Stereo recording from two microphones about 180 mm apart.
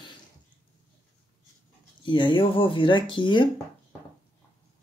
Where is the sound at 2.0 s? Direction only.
25° left (ahead or behind).